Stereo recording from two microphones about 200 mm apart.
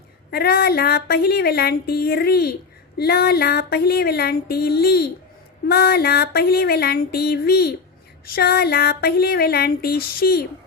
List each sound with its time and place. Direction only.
0.3 s speech: 50° left (ahead or behind)